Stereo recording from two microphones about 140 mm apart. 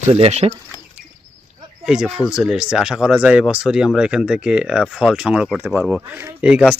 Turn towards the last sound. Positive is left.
turn(degrees=-5)  # may be behind; listen again after turning